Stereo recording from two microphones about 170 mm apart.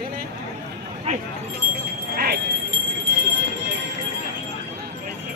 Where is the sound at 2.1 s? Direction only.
60° right (ahead or behind).